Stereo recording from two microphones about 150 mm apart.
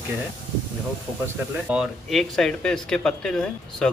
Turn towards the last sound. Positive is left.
turn(degrees=5)  # may be behind; listen again after turning